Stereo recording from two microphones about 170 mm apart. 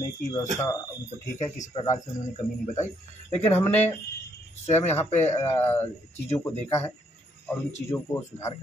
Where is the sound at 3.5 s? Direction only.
10° left (ahead or behind).